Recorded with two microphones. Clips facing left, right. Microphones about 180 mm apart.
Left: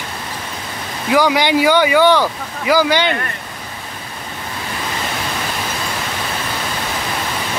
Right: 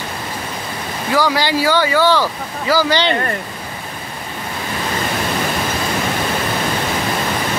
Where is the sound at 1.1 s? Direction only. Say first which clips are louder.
Left 3 dB; 15° left (ahead or behind).